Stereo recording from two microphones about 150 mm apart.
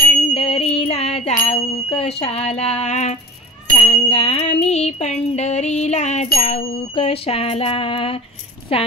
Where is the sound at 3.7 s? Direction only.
40° left (ahead or behind).